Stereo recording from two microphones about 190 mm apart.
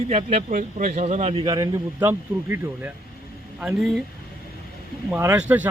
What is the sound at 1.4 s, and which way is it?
Speech, 20° right (ahead or behind).